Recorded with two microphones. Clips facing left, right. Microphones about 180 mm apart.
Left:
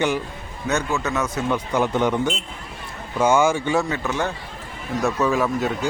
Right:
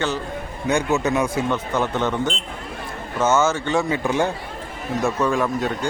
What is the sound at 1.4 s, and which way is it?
Speech, 10° left (ahead or behind).